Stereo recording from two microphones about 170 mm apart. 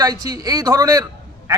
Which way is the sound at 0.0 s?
25° right (ahead or behind).